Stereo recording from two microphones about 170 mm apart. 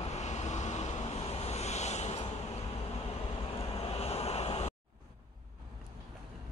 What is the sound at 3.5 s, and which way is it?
Vehicle, 35° left (ahead or behind).